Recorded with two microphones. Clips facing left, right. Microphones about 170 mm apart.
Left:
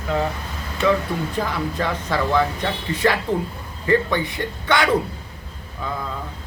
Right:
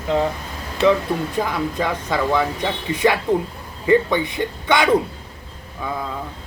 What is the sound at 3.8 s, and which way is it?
Speech, 15° right (ahead or behind).